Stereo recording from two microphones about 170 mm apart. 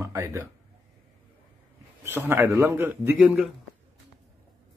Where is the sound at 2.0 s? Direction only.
10° right (ahead or behind).